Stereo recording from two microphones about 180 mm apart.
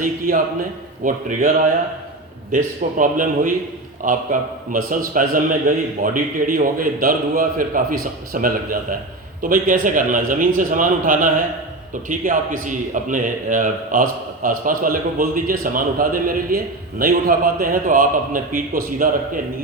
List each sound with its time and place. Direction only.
0.0 s a man's voice: 50° right (ahead or behind)